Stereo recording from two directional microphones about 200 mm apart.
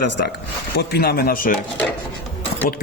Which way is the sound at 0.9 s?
50° left (ahead or behind).